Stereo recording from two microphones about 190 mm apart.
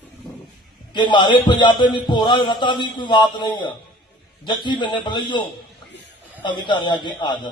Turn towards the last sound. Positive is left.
turn(degrees=25)  # may be behind; listen again after turning